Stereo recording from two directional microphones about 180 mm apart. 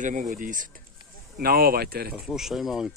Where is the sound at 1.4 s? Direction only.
55° right (ahead or behind).